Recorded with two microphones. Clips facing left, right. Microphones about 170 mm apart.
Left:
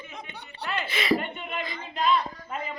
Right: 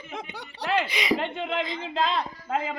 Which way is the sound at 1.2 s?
90° right.